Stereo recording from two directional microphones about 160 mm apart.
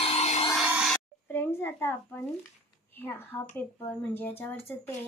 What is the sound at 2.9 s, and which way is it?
A woman's voice, 15° left (ahead or behind).